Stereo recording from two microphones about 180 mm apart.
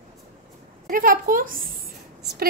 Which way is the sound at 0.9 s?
50° right (ahead or behind).